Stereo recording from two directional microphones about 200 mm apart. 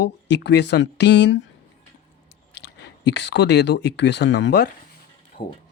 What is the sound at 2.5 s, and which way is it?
Speech, 55° left (ahead or behind).